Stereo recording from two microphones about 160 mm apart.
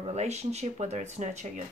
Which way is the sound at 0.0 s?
45° right (ahead or behind).